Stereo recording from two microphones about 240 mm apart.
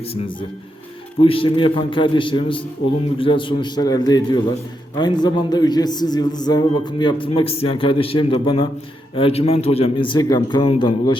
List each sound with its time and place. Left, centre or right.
1.2 s a man's voice: left